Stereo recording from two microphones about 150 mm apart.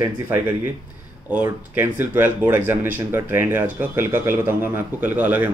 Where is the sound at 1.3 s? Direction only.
15° right (ahead or behind).